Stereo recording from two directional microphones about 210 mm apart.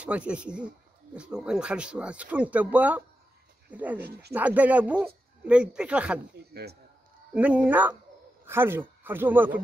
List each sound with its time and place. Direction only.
0.0 s speech: 5° right (ahead or behind)
6.3 s speech: 50° right (ahead or behind)
7.3 s speech: 5° right (ahead or behind)